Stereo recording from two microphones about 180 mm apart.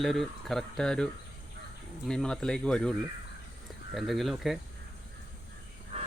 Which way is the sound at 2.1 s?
5° left (ahead or behind).